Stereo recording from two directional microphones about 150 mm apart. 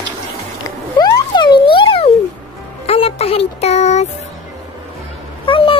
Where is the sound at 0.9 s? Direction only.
25° left (ahead or behind); by 4.1 s 50° left (ahead or behind).